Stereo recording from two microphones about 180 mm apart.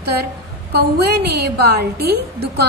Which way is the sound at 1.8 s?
60° right (ahead or behind).